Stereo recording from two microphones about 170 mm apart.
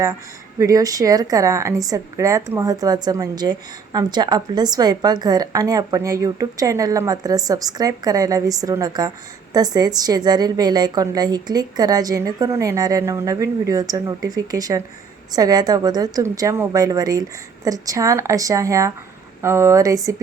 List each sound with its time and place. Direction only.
0.6 s a woman's voice: 20° right (ahead or behind)